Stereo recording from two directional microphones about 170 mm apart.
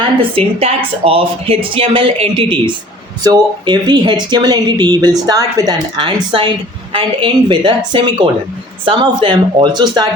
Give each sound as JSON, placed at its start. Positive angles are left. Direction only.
{"t": 0.2, "sound": "a woman's voice", "side_deg": -35}